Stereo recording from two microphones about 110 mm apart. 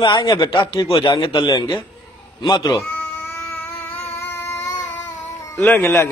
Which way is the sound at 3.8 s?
20° left (ahead or behind).